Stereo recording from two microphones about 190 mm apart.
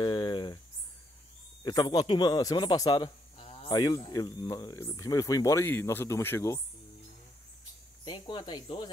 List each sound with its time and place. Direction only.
0.0 s a sound: 25° left (ahead or behind)
1.6 s speech: 20° left (ahead or behind)
8.0 s speech: 25° left (ahead or behind)